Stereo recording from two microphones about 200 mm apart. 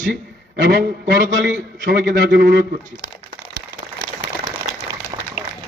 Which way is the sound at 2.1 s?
55° right (ahead or behind).